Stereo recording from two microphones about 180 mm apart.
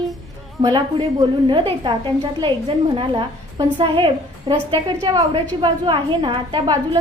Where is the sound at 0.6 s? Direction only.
25° right (ahead or behind).